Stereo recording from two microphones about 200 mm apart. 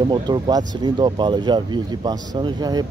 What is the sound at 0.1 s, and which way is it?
Speech, 20° right (ahead or behind).